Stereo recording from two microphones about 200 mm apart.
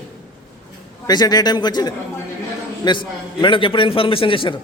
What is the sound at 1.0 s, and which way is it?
A man's voice, 20° left (ahead or behind).